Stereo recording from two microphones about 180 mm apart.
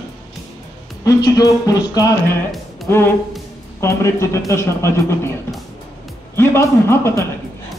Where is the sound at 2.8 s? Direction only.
10° left (ahead or behind).